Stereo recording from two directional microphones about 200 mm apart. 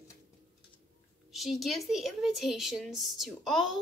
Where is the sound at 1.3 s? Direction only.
Centre (ahead or behind).